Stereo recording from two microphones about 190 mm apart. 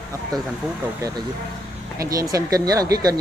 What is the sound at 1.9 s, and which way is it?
Speech, 15° right (ahead or behind).